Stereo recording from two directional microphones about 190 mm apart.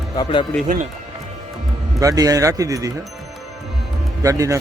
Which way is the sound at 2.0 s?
20° right (ahead or behind).